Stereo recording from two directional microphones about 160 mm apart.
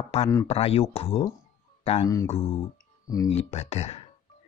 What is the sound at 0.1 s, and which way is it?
Speech, 40° left (ahead or behind).